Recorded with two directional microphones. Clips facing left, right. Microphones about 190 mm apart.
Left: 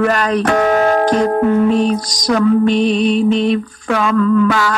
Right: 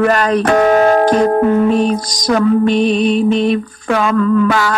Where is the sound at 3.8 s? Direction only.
35° right (ahead or behind).